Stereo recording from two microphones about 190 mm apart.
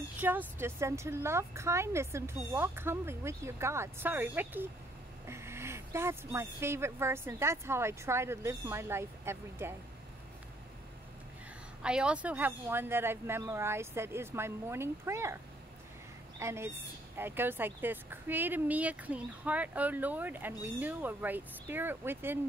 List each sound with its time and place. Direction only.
0.2 s speech: 10° right (ahead or behind)
11.8 s speech: 5° right (ahead or behind)
16.3 s speech: 15° right (ahead or behind)